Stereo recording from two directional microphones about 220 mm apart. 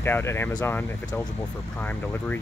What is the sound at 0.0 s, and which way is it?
Speech, 10° left (ahead or behind).